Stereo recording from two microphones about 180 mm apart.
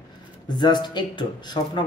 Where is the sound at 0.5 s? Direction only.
25° left (ahead or behind).